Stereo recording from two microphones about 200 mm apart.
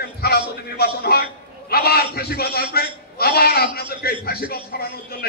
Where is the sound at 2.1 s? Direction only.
50° left (ahead or behind).